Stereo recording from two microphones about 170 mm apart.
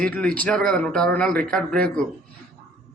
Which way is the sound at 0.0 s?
5° left (ahead or behind).